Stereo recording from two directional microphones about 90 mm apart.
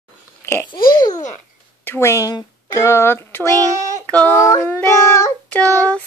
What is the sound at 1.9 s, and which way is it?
Speech, 30° left (ahead or behind).